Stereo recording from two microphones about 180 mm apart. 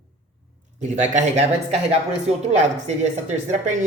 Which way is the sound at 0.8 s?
40° right (ahead or behind).